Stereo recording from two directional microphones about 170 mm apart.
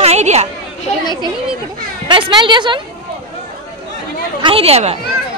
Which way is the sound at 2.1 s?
25° right (ahead or behind).